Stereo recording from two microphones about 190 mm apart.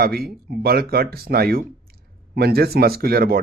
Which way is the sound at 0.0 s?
55° right (ahead or behind).